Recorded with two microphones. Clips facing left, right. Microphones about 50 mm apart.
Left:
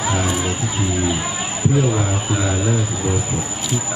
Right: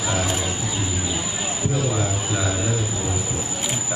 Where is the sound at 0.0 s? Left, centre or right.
Left.